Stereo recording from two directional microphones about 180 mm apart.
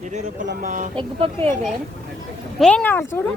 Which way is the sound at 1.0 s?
30° right (ahead or behind).